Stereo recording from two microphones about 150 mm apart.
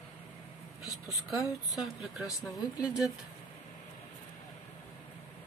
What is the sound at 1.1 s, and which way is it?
Speech, centre (ahead or behind).